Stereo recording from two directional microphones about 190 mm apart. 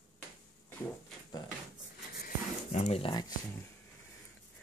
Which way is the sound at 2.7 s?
35° left (ahead or behind).